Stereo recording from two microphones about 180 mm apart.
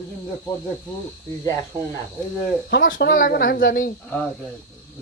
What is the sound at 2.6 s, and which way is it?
Speech, 80° left.